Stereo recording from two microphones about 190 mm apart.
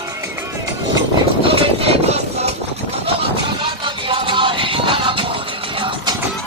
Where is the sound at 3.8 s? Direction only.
25° right (ahead or behind).